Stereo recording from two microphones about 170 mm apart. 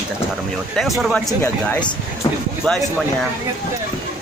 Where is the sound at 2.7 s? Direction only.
5° left (ahead or behind).